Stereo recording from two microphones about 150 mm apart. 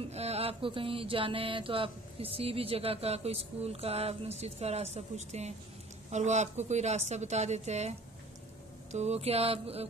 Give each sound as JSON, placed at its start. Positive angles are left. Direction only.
{"t": 0.1, "sound": "mantra", "side_deg": -45}
{"t": 6.0, "sound": "a woman's voice", "side_deg": -50}
{"t": 8.9, "sound": "mantra", "side_deg": -45}